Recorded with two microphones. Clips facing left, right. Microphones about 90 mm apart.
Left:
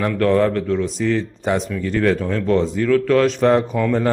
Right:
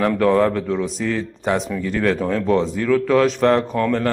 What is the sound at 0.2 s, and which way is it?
Speech, 5° right (ahead or behind).